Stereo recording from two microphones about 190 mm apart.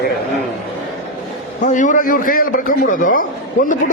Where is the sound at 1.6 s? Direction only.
40° left (ahead or behind).